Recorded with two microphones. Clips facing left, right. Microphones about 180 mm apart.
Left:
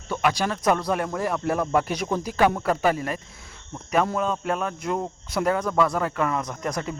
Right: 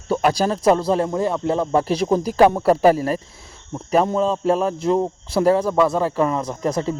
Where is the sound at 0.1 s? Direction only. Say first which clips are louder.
Right 6 dB; 35° right (ahead or behind).